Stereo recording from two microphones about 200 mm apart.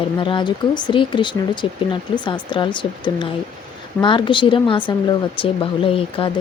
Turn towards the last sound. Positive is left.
turn(degrees=25)  # may be behind; listen again after turning